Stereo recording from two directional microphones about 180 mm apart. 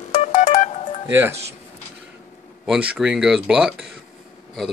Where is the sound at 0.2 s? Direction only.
40° left (ahead or behind).